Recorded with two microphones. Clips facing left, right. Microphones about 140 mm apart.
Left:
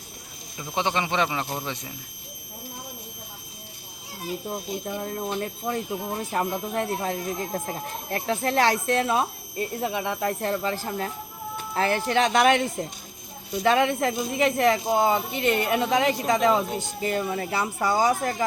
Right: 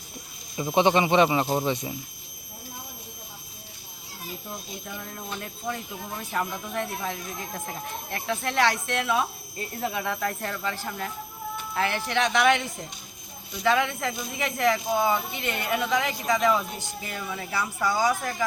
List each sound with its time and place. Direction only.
0.5 s speech: 20° right (ahead or behind)
4.9 s speech: 40° left (ahead or behind)
9.6 s speech: 20° left (ahead or behind); by 13.9 s 45° left (ahead or behind)
14.0 s speech: 30° left (ahead or behind)
17.1 s speech: 45° left (ahead or behind)
17.6 s speech: 25° left (ahead or behind)